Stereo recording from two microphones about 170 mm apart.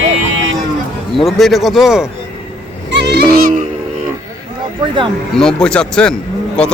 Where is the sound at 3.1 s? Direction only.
60° right (ahead or behind).